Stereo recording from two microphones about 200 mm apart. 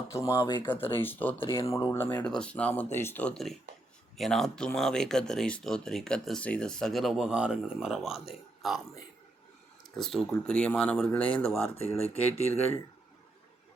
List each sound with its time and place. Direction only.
0.1 s speech: 15° left (ahead or behind)
1.4 s speech: 25° left (ahead or behind)
1.7 s speech: 15° left (ahead or behind)
9.9 s speech: centre (ahead or behind)
11.4 s speech: 30° left (ahead or behind)